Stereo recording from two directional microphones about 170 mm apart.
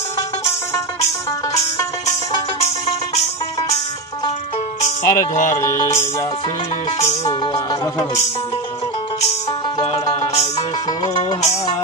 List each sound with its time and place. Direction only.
4.8 s speech: 45° left (ahead or behind)
5.6 s music: 15° left (ahead or behind)